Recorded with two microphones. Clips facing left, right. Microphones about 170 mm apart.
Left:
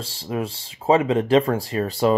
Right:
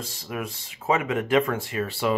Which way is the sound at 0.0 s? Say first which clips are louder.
Left 5 dB; 30° left (ahead or behind).